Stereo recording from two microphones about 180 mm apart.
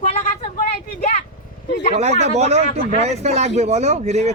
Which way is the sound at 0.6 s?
40° left (ahead or behind).